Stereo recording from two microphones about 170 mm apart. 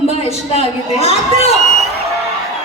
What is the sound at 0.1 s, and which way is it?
A man's voice, 35° left (ahead or behind).